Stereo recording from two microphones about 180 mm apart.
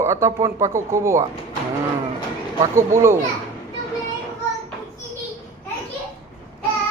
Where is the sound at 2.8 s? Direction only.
15° right (ahead or behind).